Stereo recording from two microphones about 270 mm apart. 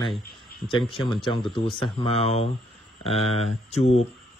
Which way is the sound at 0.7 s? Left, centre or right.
Centre.